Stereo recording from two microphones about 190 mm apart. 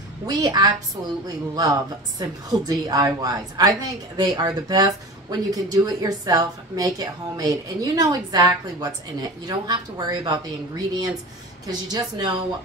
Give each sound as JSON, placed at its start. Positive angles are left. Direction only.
{"t": 0.3, "sound": "a woman's voice", "side_deg": -20}